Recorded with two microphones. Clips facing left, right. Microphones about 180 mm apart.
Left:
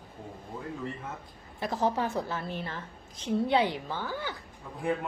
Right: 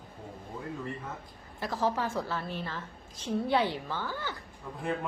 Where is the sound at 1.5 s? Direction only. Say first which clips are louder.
Left 2 dB; 20° left (ahead or behind).